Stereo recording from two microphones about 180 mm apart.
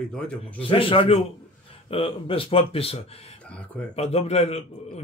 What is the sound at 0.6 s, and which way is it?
A man's voice, 30° left (ahead or behind).